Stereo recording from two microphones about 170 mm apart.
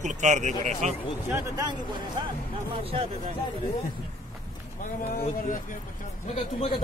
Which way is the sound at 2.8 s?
35° right (ahead or behind).